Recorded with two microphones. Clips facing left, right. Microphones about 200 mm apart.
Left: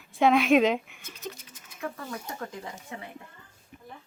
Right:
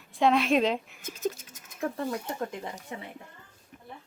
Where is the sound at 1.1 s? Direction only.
45° right (ahead or behind).